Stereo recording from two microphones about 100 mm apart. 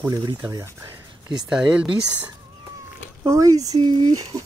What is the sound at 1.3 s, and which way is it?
Speech, 10° right (ahead or behind).